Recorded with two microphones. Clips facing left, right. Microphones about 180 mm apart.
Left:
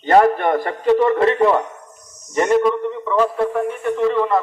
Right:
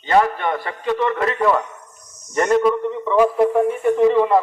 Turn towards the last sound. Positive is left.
turn(degrees=-15)  # may be behind; listen again after turning